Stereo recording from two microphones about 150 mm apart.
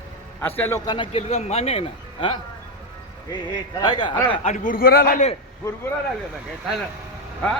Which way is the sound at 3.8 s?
30° left (ahead or behind).